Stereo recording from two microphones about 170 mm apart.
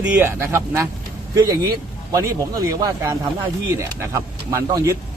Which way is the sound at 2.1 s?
20° right (ahead or behind).